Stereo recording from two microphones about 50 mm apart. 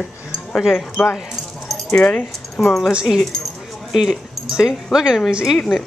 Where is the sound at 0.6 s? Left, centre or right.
Centre.